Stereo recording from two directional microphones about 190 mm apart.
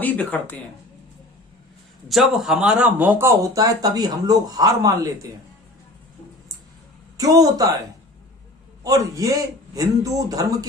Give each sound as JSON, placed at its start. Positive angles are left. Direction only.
{"t": 0.0, "sound": "speech", "side_deg": 10}
{"t": 2.0, "sound": "speech", "side_deg": 0}
{"t": 7.2, "sound": "a man's voice", "side_deg": -20}
{"t": 8.8, "sound": "a man's voice", "side_deg": -20}